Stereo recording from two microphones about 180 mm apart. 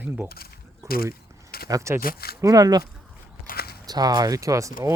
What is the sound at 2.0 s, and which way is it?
Speech, 60° left (ahead or behind).